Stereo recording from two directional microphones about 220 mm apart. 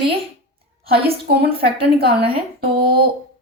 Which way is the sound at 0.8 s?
45° right (ahead or behind).